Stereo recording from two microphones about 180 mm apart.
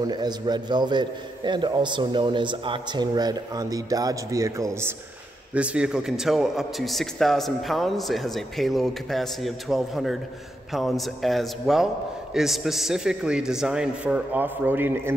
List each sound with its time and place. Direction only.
0.0 s a man's voice: 25° right (ahead or behind)